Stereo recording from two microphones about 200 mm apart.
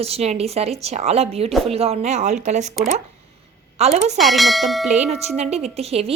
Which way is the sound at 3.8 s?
35° right (ahead or behind).